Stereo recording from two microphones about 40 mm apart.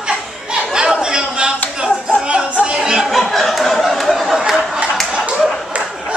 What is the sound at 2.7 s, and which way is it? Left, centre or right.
Chatter, centre.